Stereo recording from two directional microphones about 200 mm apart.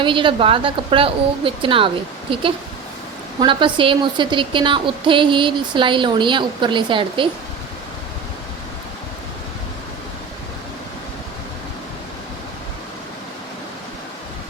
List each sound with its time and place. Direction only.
0.0 s a woman's voice: 25° right (ahead or behind)